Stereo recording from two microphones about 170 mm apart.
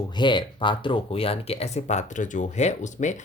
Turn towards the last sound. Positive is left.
turn(degrees=45)  # may be behind; listen again after turning